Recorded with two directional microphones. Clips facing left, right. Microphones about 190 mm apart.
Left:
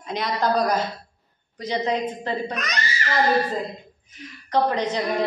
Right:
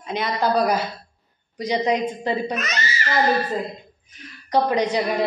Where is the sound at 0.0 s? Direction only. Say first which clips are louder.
Right 1 dB; 5° right (ahead or behind).